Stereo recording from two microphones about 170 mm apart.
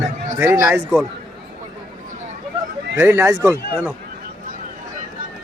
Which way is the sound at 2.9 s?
15° right (ahead or behind).